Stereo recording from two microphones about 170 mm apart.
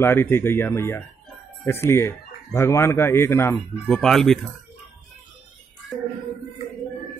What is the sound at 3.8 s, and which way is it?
Speech, 5° left (ahead or behind).